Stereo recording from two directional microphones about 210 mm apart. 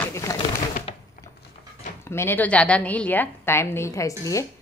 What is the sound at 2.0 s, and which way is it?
A woman's voice, 10° left (ahead or behind).